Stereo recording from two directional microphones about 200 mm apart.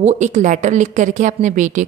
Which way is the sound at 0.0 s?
35° right (ahead or behind).